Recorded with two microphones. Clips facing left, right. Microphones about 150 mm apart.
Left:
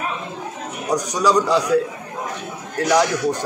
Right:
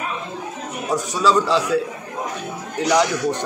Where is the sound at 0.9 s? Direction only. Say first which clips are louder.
Even; 15° left (ahead or behind).